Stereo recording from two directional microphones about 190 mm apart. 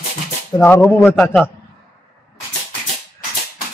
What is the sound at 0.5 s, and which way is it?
Speech, 10° left (ahead or behind).